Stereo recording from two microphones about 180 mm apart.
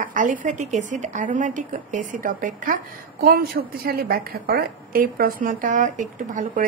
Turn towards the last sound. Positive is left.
turn(degrees=-45)  # may be behind; listen again after turning